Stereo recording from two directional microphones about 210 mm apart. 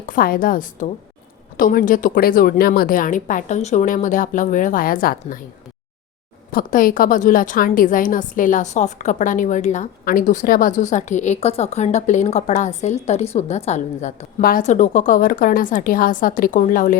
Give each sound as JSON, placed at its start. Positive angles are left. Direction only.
{"t": 0.0, "sound": "a woman's voice", "side_deg": 40}
{"t": 6.5, "sound": "a woman's voice", "side_deg": 45}